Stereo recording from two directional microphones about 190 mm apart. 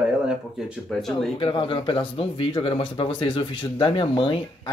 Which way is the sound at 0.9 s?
Centre (ahead or behind).